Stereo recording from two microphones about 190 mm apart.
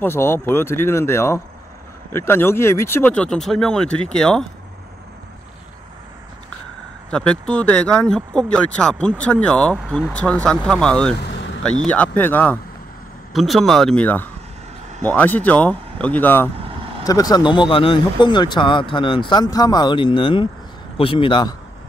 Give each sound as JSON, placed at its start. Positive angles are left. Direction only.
{"t": 0.0, "sound": "speech", "side_deg": 10}
{"t": 7.1, "sound": "speech", "side_deg": 5}